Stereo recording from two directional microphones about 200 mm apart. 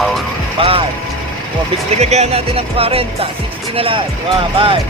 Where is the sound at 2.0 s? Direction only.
35° right (ahead or behind).